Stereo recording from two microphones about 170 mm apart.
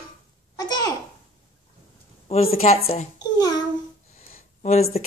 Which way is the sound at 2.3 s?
40° left (ahead or behind).